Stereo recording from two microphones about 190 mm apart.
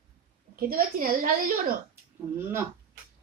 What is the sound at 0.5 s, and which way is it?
A woman's voice, 50° right (ahead or behind).